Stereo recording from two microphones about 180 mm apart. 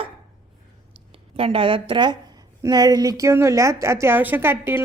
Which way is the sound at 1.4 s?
30° right (ahead or behind).